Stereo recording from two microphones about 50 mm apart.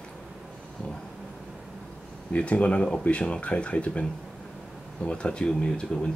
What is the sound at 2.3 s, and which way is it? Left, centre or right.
Speech, left.